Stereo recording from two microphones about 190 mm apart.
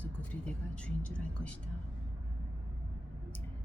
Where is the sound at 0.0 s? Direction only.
5° left (ahead or behind).